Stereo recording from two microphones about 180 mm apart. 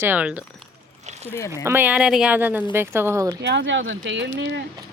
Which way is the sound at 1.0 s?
40° right (ahead or behind).